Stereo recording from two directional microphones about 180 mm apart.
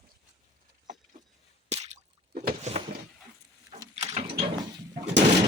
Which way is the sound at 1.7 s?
35° right (ahead or behind).